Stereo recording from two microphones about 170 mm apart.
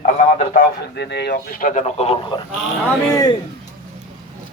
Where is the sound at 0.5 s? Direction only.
85° left; by 2.4 s 30° left (ahead or behind).